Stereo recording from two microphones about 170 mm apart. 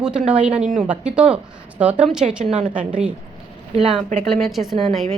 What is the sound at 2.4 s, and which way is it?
Speech, 40° right (ahead or behind).